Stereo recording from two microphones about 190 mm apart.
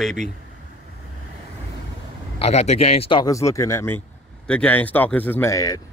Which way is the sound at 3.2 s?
15° left (ahead or behind).